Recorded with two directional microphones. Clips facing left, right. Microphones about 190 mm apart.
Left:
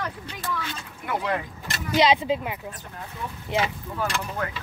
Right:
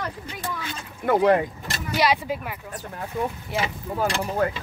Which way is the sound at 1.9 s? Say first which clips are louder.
Left 3 dB; 20° left (ahead or behind).